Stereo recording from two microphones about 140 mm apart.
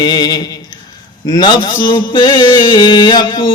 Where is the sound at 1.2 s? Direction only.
30° left (ahead or behind).